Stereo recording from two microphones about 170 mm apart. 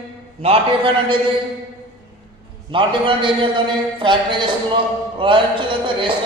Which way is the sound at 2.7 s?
30° right (ahead or behind).